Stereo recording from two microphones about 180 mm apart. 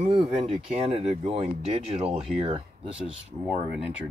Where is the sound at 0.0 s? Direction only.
30° right (ahead or behind).